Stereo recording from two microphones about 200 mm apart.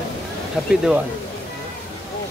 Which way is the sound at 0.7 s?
5° right (ahead or behind).